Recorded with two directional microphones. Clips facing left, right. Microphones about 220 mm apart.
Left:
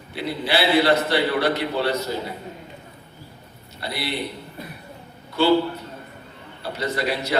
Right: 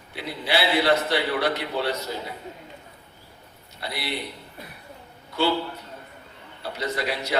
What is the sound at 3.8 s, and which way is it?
Speech, 15° right (ahead or behind).